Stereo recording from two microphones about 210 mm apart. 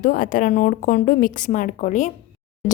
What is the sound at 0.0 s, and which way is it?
Speech, 40° left (ahead or behind).